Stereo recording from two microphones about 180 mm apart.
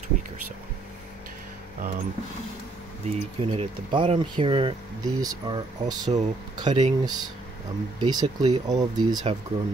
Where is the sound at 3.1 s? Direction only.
35° right (ahead or behind).